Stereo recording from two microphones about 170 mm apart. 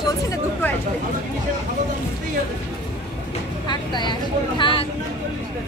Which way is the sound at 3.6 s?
25° left (ahead or behind).